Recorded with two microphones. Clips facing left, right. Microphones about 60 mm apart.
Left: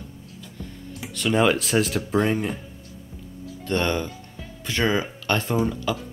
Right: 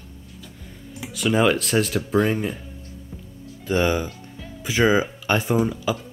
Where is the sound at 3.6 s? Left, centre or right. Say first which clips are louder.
Right 3 dB; centre.